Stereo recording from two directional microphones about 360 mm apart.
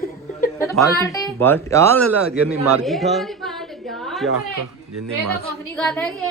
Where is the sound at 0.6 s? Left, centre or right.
Centre.